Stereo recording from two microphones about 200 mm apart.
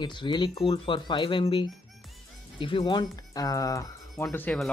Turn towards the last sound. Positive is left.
turn(degrees=5)  # may be behind; listen again after turning